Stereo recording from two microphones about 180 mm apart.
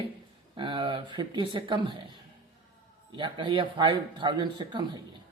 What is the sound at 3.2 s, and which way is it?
Speech, 25° right (ahead or behind).